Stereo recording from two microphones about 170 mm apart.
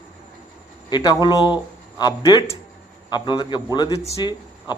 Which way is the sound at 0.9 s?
25° left (ahead or behind).